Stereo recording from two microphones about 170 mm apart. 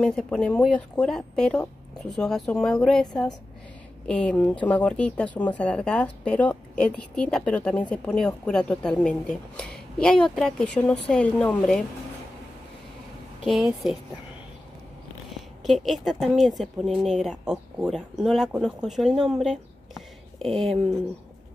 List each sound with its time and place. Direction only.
0.0 s speech: 5° left (ahead or behind)
13.5 s speech: 5° right (ahead or behind)
15.6 s speech: centre (ahead or behind)